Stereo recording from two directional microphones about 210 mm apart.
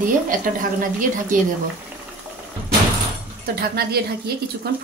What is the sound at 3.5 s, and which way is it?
A woman's voice, 45° right (ahead or behind).